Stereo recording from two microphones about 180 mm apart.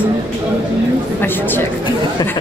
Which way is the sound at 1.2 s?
10° left (ahead or behind).